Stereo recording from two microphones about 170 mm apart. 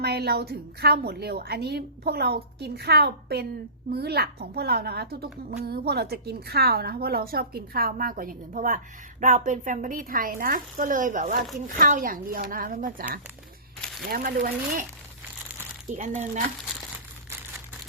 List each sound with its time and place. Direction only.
0.0 s a woman's voice: 70° right (ahead or behind)
15.9 s speech: 50° right (ahead or behind)